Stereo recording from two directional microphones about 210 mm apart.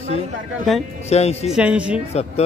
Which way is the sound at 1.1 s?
30° left (ahead or behind).